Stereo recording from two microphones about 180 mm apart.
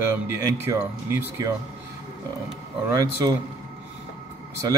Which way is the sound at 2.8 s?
15° right (ahead or behind).